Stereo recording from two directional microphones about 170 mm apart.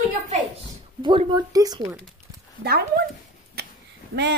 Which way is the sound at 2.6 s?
70° right (ahead or behind).